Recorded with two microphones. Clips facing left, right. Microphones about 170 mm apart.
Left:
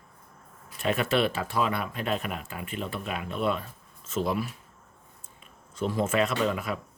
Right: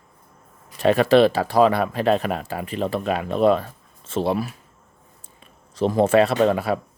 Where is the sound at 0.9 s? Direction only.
35° right (ahead or behind).